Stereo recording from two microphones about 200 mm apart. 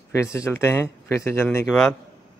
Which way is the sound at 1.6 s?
Centre (ahead or behind).